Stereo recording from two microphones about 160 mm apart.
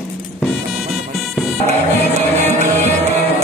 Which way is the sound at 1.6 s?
45° right (ahead or behind).